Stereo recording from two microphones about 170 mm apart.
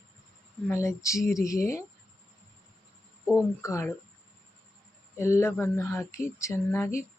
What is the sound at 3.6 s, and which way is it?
Speech, 15° left (ahead or behind).